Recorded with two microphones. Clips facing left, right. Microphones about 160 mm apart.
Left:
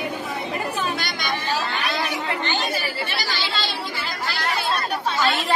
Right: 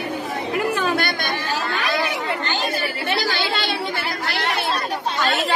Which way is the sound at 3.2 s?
55° right (ahead or behind).